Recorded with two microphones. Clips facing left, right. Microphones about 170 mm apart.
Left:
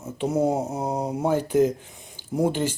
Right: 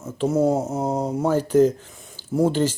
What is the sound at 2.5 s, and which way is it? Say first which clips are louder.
Speech: right 4 dB; 15° left (ahead or behind).